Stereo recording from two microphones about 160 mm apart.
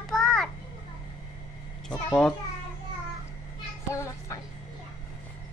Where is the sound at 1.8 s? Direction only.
5° left (ahead or behind).